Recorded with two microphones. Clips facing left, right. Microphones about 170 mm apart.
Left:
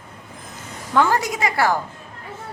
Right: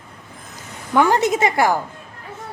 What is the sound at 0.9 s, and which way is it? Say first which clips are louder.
Speech: right 3 dB; 15° right (ahead or behind).